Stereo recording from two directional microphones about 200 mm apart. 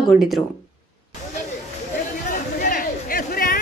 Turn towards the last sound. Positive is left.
turn(degrees=45)  # may be behind; listen again after turning